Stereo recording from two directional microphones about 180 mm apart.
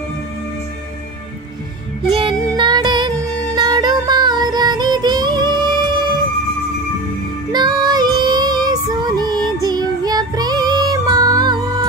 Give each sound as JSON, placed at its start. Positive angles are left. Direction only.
{"t": 2.0, "sound": "music", "side_deg": -30}
{"t": 7.5, "sound": "child singing", "side_deg": -25}